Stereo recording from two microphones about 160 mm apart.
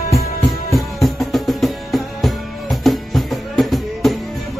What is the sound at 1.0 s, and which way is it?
Music, centre (ahead or behind).